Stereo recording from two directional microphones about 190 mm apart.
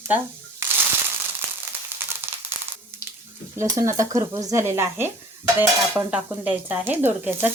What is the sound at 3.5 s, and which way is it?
Frying, 15° right (ahead or behind).